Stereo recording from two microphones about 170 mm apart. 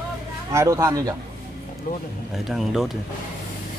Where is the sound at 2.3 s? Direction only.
Centre (ahead or behind).